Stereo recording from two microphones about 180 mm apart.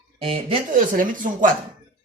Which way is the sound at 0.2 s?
30° right (ahead or behind).